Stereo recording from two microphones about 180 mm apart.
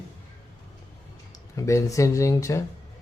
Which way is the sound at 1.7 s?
15° left (ahead or behind).